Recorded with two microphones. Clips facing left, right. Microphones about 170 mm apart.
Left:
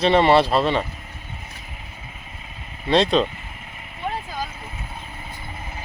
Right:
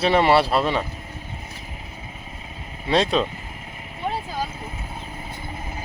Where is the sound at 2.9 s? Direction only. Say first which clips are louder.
Left 2 dB; 5° right (ahead or behind).